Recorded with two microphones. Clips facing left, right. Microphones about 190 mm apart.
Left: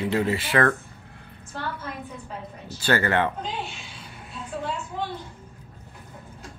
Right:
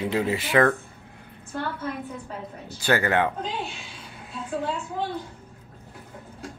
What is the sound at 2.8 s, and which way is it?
Speech, 15° right (ahead or behind).